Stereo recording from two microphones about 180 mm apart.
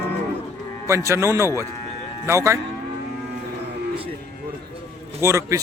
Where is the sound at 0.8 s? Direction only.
15° right (ahead or behind).